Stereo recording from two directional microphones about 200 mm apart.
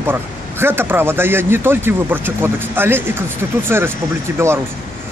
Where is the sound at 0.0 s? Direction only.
10° right (ahead or behind).